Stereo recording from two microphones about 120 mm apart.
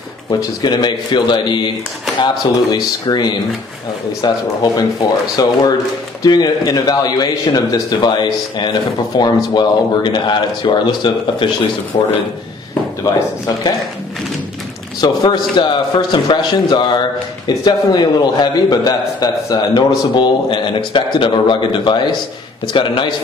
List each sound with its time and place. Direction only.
0.3 s a man's voice: 35° left (ahead or behind)
15.0 s a man's voice: 35° left (ahead or behind)
20.2 s a man's voice: 45° left (ahead or behind)